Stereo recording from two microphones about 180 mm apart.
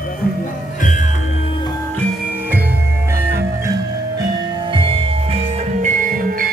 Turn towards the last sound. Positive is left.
turn(degrees=-50)  # may be behind; listen again after turning